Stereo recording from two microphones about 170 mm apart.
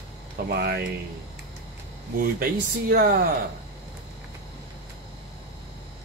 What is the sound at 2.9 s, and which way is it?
Speech, 55° right (ahead or behind).